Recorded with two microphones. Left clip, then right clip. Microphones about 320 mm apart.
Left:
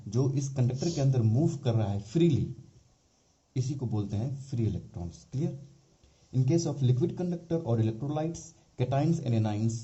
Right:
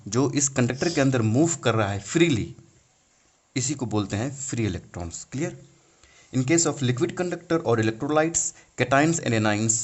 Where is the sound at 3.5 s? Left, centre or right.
Right.